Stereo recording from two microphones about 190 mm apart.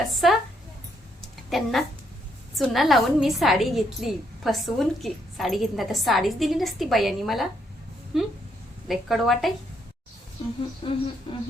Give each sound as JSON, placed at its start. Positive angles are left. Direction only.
{"t": 0.0, "sound": "a woman's voice", "side_deg": 0}
{"t": 1.5, "sound": "a woman's voice", "side_deg": 0}
{"t": 10.8, "sound": "speech", "side_deg": 25}